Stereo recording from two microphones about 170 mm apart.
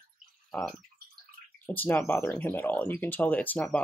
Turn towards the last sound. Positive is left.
turn(degrees=5)  # may be behind; listen again after turning